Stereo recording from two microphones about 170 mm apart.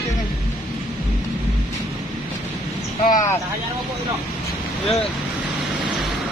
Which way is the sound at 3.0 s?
45° left (ahead or behind).